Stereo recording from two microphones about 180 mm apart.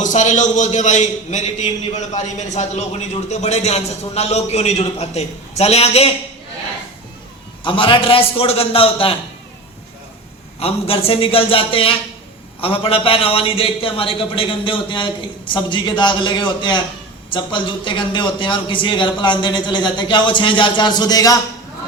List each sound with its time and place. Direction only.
0.0 s a man's voice: 40° left (ahead or behind)
7.6 s a man's voice: 25° left (ahead or behind)
10.6 s a man's voice: 35° left (ahead or behind)